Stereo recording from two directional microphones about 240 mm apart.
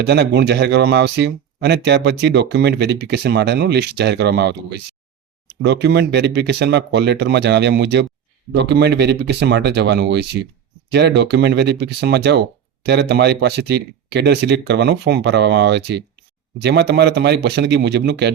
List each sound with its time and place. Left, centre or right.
0.0 s speech: right